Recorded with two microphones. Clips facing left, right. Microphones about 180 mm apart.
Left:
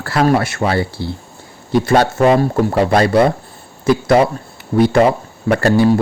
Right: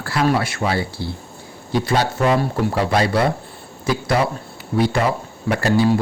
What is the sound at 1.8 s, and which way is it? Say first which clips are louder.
Speech: left 6 dB; 50° left (ahead or behind).